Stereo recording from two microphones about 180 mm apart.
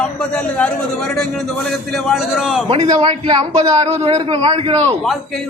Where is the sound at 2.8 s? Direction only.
20° right (ahead or behind).